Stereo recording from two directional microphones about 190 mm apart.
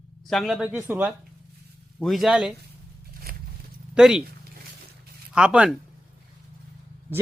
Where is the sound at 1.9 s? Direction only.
Centre (ahead or behind).